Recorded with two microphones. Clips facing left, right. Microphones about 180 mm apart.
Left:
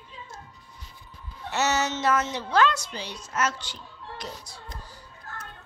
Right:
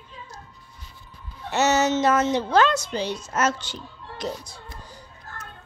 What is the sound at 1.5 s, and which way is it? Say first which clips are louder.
A woman's voice: right 5 dB; 20° right (ahead or behind).